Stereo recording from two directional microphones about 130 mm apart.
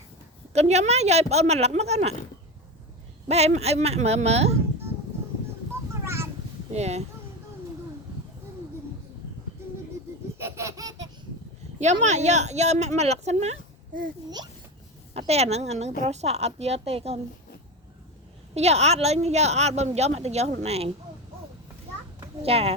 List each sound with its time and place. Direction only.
0.5 s a woman's voice: 55° right (ahead or behind)
3.2 s a woman's voice: 55° right (ahead or behind)
5.9 s a sound: 20° right (ahead or behind)
6.7 s speech: 55° right (ahead or behind)
10.3 s baby laughter: 20° right (ahead or behind)
11.8 s a woman's voice: 65° right (ahead or behind)
15.3 s a woman's voice: 55° right (ahead or behind)
18.5 s a woman's voice: 55° right (ahead or behind)
22.4 s a woman's voice: 50° right (ahead or behind)